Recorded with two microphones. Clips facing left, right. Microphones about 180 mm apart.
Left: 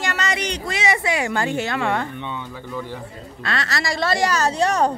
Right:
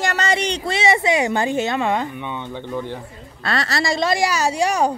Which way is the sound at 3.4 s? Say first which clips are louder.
Right 4 dB; 35° right (ahead or behind).